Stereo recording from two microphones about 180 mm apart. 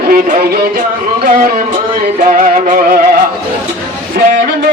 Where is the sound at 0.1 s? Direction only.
55° right (ahead or behind).